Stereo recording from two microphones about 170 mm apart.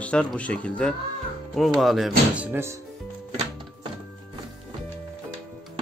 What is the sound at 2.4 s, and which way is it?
Speech, 10° right (ahead or behind).